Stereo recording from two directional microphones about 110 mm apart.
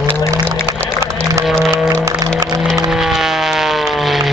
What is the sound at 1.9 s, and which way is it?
Music, 30° right (ahead or behind).